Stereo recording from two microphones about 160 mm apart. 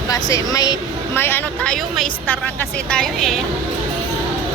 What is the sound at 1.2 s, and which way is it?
A woman's voice, 15° left (ahead or behind).